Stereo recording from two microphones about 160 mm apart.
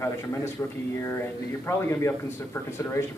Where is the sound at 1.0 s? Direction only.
15° left (ahead or behind).